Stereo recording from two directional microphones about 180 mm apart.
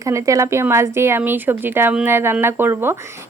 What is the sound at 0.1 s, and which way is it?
A woman's voice, 15° right (ahead or behind).